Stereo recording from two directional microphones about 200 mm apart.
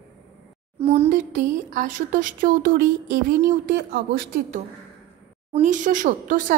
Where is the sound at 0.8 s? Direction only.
30° right (ahead or behind).